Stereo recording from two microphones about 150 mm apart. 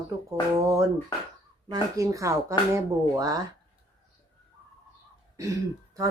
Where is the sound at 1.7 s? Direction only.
20° right (ahead or behind).